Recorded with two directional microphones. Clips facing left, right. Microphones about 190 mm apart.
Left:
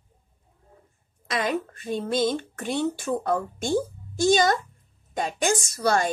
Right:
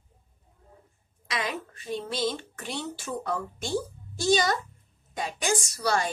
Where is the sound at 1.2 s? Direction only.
50° left (ahead or behind).